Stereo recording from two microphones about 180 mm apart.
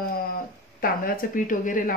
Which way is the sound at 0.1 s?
55° left (ahead or behind).